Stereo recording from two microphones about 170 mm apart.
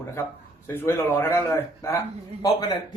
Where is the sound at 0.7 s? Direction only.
15° left (ahead or behind).